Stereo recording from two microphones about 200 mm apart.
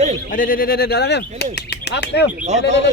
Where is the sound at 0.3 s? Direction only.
45° left (ahead or behind).